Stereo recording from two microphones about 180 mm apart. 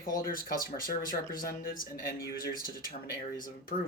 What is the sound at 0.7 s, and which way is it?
Speech, 50° left (ahead or behind).